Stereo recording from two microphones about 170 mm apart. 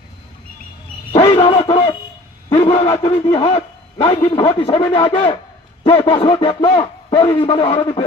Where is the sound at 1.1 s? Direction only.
30° left (ahead or behind).